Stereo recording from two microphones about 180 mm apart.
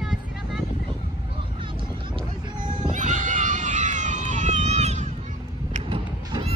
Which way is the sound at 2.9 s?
45° right (ahead or behind).